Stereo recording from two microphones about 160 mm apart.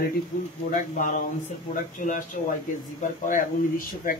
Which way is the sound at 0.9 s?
55° left (ahead or behind).